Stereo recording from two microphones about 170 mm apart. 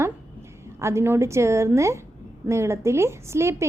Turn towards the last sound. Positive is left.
turn(degrees=-15)  # may be behind; listen again after turning